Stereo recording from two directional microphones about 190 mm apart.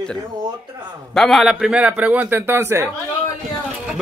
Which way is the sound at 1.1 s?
Centre (ahead or behind).